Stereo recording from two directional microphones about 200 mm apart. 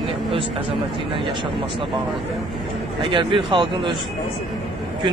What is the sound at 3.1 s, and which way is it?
Speech, 25° right (ahead or behind).